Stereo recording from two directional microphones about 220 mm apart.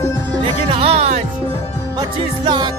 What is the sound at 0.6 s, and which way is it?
Music, 25° right (ahead or behind).